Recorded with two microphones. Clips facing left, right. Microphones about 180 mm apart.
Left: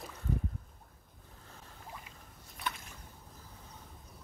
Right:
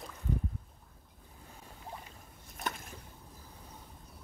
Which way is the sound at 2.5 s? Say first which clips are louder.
Right 1 dB; 45° right (ahead or behind).